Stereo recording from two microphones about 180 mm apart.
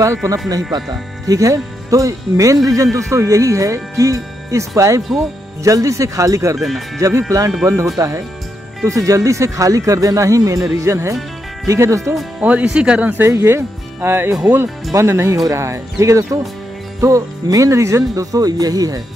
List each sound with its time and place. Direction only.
0.0 s speech: 15° right (ahead or behind)